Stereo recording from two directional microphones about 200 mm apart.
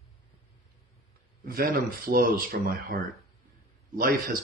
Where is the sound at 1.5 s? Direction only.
45° right (ahead or behind).